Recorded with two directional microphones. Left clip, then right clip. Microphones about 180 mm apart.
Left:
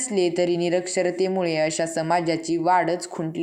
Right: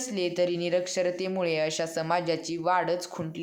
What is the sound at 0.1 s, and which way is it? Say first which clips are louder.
Speech: left 6 dB; 15° left (ahead or behind).